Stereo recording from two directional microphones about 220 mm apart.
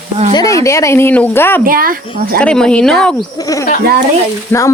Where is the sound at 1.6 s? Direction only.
40° right (ahead or behind).